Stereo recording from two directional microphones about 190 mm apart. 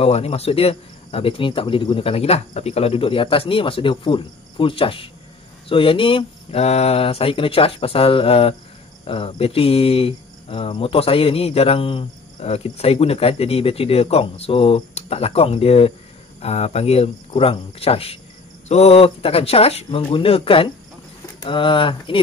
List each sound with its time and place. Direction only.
0.0 s cricket: 30° left (ahead or behind)